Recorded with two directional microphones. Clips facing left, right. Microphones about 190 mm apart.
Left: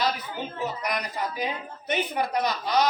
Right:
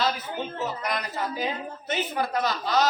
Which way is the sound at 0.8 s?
15° left (ahead or behind).